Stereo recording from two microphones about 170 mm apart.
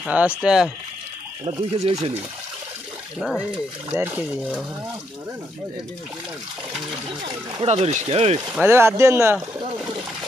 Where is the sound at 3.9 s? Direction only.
15° right (ahead or behind).